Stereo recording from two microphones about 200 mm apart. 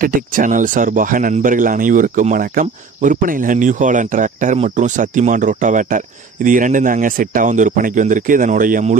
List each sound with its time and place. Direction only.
0.0 s speech: 40° right (ahead or behind)